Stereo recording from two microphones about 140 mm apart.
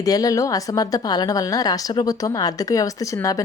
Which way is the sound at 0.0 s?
25° left (ahead or behind).